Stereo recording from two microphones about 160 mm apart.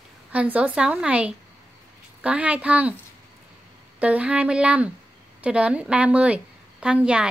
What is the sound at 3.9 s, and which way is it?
A woman's voice, 10° right (ahead or behind).